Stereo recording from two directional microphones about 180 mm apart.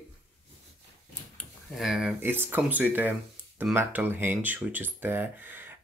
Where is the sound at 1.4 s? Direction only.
Centre (ahead or behind).